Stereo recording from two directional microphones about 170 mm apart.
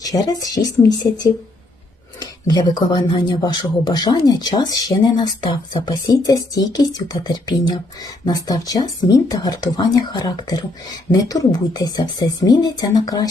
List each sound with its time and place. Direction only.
0.0 s speech: 20° left (ahead or behind)
2.5 s speech: 25° left (ahead or behind)